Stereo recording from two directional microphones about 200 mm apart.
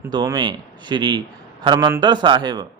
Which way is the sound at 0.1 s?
20° right (ahead or behind).